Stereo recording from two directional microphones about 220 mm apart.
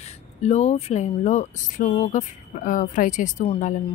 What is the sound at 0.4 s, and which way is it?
Speech, 30° left (ahead or behind).